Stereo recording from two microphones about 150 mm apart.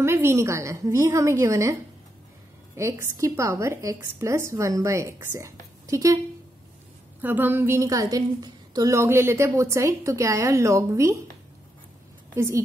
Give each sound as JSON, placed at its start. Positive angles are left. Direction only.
{"t": 0.0, "sound": "a woman's voice", "side_deg": -15}
{"t": 7.2, "sound": "a woman's voice", "side_deg": -10}
{"t": 12.4, "sound": "a woman's voice", "side_deg": -20}